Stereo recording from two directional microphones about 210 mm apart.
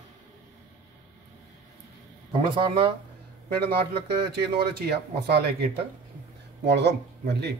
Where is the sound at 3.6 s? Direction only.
50° right (ahead or behind).